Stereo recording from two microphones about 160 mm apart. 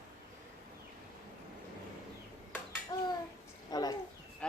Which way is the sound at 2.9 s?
25° left (ahead or behind).